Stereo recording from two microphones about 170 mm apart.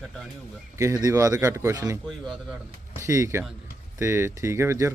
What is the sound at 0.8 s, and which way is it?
Speech, 20° right (ahead or behind).